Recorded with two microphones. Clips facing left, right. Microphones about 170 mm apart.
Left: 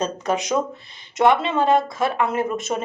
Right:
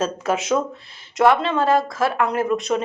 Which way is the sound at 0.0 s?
5° right (ahead or behind).